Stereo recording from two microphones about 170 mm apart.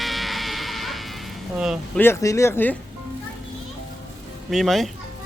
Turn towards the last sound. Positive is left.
turn(degrees=0)  # may be behind; listen again after turning